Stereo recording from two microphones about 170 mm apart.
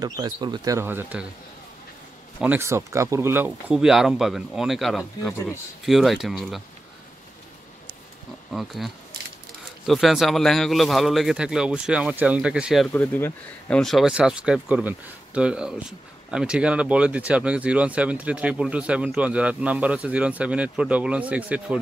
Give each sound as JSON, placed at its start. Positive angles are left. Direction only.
{"t": 0.0, "sound": "speech", "side_deg": -25}
{"t": 2.4, "sound": "a man's voice", "side_deg": -15}
{"t": 8.5, "sound": "a man's voice", "side_deg": 0}
{"t": 12.9, "sound": "speech", "side_deg": 10}